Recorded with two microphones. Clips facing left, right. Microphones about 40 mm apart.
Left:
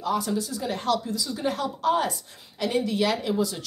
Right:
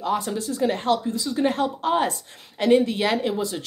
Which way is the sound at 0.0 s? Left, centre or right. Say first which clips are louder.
Right 1 dB; right.